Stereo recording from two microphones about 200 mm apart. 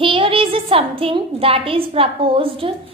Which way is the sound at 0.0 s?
25° right (ahead or behind).